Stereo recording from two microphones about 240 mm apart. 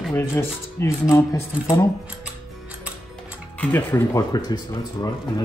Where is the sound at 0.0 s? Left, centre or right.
Centre.